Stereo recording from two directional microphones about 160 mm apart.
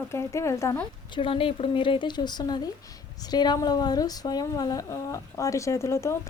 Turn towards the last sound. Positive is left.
turn(degrees=20)  # may be behind; listen again after turning